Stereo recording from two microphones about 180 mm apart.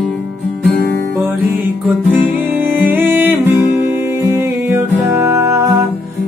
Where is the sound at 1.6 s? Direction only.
10° right (ahead or behind).